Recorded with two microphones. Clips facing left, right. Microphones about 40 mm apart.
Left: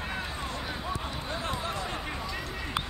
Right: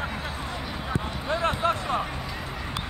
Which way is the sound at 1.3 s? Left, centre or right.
Right.